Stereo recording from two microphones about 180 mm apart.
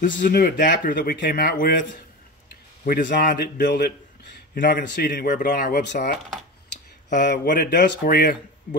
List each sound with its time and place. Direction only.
0.0 s speech: 50° left (ahead or behind)
7.1 s speech: 70° left (ahead or behind)
7.4 s speech: 45° left (ahead or behind)